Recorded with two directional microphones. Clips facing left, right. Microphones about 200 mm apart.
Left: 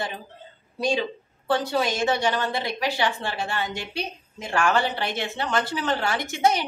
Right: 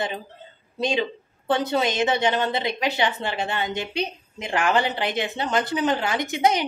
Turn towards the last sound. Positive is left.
turn(degrees=-20)  # may be behind; listen again after turning